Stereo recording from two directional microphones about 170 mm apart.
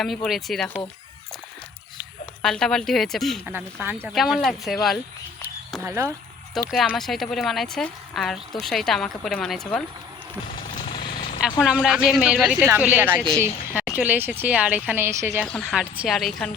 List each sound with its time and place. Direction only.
0.0 s speech: centre (ahead or behind)
2.4 s speech: 5° left (ahead or behind)
5.8 s speech: 15° right (ahead or behind)
6.7 s speech: centre (ahead or behind)
10.5 s vehicle: 30° left (ahead or behind)
11.6 s speech: 5° right (ahead or behind)
13.1 s speech: 5° left (ahead or behind)
13.4 s speech: 10° right (ahead or behind)
15.4 s speech: centre (ahead or behind)